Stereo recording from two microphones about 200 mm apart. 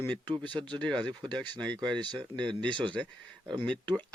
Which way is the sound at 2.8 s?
5° left (ahead or behind).